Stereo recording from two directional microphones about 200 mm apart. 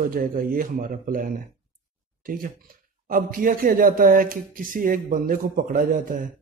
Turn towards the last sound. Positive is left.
turn(degrees=-45)  # may be behind; listen again after turning